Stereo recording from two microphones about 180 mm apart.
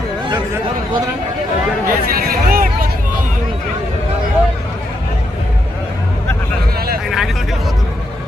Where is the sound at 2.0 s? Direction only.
55° right (ahead or behind).